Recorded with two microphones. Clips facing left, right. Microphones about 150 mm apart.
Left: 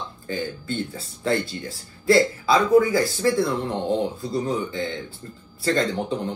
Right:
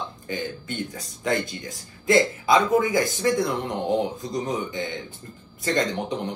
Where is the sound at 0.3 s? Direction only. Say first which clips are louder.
Left 4 dB; 15° right (ahead or behind).